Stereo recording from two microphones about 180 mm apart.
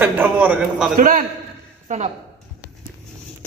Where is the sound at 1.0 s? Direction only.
50° right (ahead or behind).